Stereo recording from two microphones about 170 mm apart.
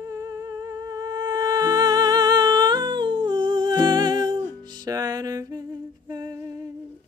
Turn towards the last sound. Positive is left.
turn(degrees=-20)  # may be behind; listen again after turning